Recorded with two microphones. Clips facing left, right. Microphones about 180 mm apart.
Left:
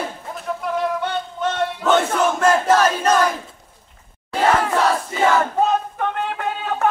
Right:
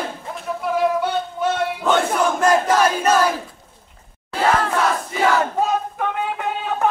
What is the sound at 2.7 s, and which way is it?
Crowd, 10° right (ahead or behind).